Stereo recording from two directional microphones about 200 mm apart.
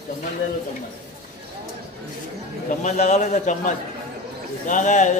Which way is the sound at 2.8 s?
35° left (ahead or behind).